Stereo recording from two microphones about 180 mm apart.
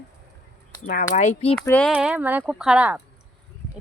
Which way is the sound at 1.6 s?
10° left (ahead or behind).